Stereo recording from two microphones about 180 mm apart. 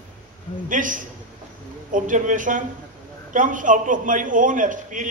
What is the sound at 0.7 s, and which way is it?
A man's voice, 45° right (ahead or behind).